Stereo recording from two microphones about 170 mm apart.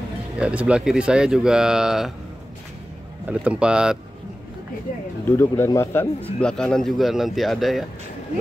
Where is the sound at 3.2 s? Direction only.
5° right (ahead or behind).